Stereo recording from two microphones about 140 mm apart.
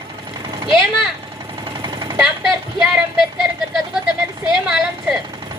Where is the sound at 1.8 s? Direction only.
30° right (ahead or behind).